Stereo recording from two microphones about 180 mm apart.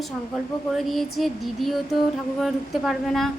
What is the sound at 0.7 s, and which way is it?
Speech, centre (ahead or behind).